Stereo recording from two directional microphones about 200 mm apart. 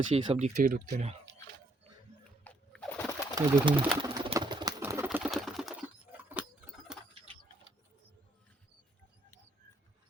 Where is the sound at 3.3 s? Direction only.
20° right (ahead or behind).